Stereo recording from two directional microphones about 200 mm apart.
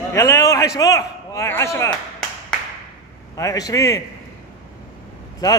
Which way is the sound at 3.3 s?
15° left (ahead or behind).